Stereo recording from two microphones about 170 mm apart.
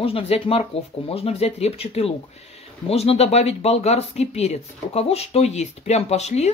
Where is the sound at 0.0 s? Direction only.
35° left (ahead or behind).